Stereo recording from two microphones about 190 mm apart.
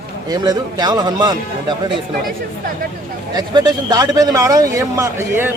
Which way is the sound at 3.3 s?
20° right (ahead or behind).